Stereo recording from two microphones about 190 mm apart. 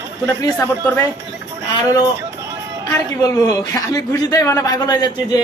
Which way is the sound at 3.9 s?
20° left (ahead or behind).